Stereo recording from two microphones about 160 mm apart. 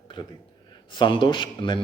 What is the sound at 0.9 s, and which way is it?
Speech, 30° left (ahead or behind).